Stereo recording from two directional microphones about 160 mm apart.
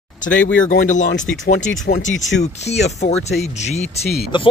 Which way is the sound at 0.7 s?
50° left (ahead or behind).